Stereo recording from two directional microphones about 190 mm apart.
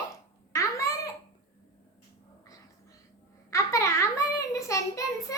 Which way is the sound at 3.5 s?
15° left (ahead or behind).